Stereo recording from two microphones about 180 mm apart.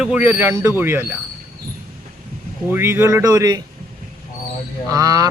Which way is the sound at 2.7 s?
15° right (ahead or behind).